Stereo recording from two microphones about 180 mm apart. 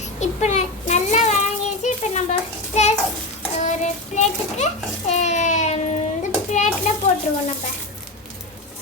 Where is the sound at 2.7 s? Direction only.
35° left (ahead or behind).